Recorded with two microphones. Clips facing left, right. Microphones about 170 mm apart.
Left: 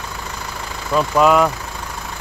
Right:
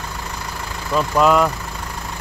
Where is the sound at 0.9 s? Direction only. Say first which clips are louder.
Left 1 dB; 5° left (ahead or behind).